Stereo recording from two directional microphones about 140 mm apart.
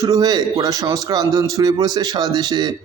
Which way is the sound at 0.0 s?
25° right (ahead or behind).